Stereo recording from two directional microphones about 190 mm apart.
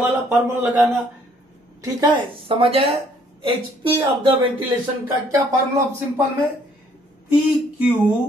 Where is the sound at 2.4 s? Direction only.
30° right (ahead or behind).